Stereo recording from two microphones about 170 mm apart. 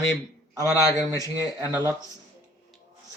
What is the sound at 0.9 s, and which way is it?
Speech, 20° left (ahead or behind).